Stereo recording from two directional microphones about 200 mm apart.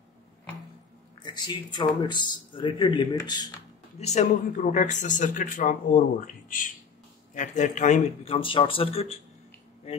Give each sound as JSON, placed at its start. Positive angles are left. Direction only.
{"t": 1.2, "sound": "a man's voice", "side_deg": 20}
{"t": 4.0, "sound": "speech", "side_deg": 35}